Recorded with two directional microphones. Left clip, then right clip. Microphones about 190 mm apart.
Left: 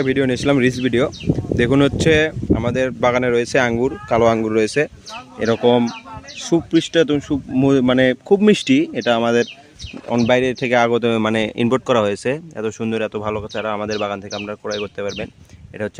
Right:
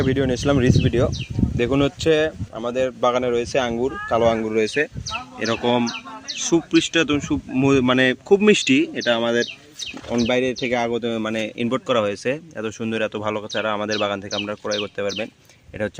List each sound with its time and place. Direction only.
0.0 s speech: 40° left (ahead or behind)
5.4 s speech: 30° left (ahead or behind)
10.1 s speech: 50° left (ahead or behind); by 15.3 s 10° left (ahead or behind)